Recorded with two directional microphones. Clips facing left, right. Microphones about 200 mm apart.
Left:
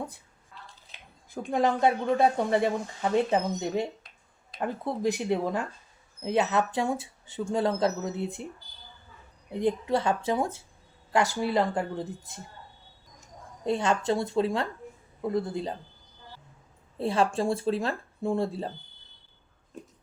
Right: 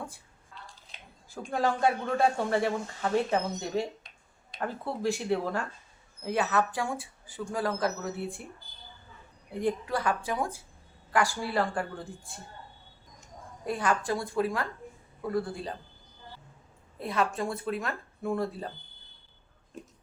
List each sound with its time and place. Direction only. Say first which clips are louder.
1.5 s speech: left 3 dB; 20° left (ahead or behind)
9.5 s speech: left 4 dB; 20° left (ahead or behind)
13.7 s speech: left 3 dB; 25° left (ahead or behind)
17.0 s speech: left 4 dB; 30° left (ahead or behind)